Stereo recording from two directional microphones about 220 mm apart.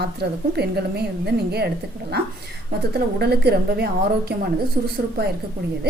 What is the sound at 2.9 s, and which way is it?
Speech, 45° right (ahead or behind).